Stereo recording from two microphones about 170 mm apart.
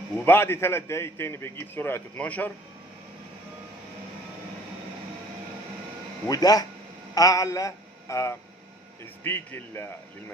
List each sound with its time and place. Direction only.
0.2 s a man's voice: 15° left (ahead or behind)
6.2 s a man's voice: 20° left (ahead or behind)